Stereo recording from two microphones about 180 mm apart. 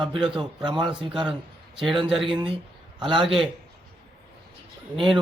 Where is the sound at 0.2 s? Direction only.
5° right (ahead or behind).